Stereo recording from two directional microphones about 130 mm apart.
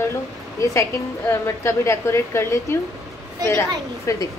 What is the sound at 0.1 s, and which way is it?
A woman's voice, 25° left (ahead or behind).